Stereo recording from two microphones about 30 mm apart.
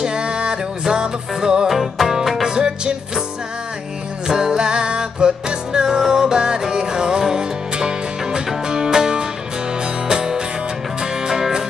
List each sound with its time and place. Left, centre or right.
0.0 s music: right
1.7 s music: centre
2.5 s music: right
4.3 s music: right